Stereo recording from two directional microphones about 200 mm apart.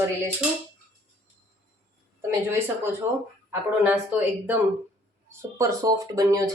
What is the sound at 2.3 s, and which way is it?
Speech, 10° right (ahead or behind).